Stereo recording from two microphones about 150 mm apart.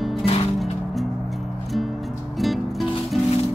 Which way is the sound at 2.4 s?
Centre (ahead or behind).